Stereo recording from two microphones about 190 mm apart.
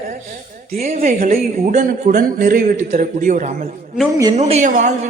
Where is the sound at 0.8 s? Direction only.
35° right (ahead or behind).